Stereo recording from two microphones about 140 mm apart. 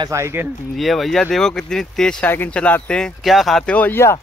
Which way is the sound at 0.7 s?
Centre (ahead or behind).